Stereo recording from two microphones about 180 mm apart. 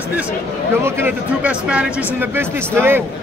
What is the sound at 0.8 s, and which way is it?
Speech, 10° right (ahead or behind).